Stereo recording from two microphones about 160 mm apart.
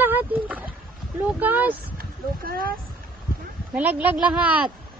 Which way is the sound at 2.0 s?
70° right (ahead or behind).